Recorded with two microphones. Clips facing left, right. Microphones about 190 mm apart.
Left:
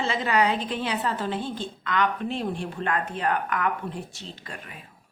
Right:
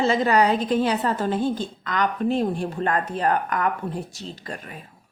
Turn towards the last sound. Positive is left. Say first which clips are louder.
# right 5 dB
turn(degrees=-40)  # may be behind; listen again after turning